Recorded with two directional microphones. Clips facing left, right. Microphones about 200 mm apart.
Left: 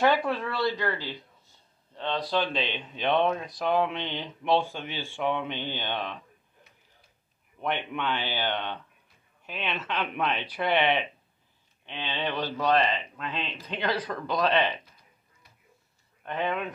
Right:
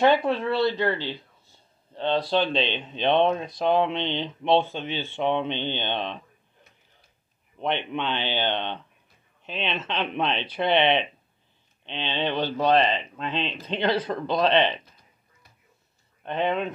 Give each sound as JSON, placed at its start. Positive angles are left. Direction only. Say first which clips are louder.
{"t": 0.0, "sound": "speech", "louder": "right 4 dB", "side_deg": -25}
{"t": 7.5, "sound": "speech", "louder": "right 3 dB", "side_deg": -25}
{"t": 16.2, "sound": "speech", "louder": "right 4 dB", "side_deg": -25}